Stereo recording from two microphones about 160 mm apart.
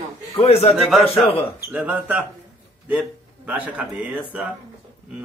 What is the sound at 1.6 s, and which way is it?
Speech, 10° right (ahead or behind).